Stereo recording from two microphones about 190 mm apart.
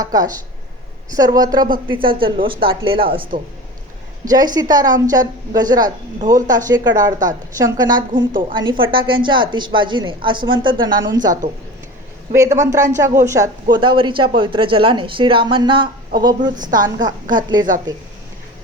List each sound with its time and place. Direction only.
0.0 s speech: 20° right (ahead or behind)